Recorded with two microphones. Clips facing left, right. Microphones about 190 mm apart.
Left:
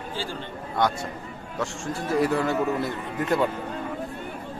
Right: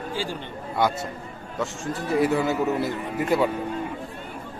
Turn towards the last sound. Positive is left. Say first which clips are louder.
# right 2 dB
turn(degrees=-10)  # may be behind; listen again after turning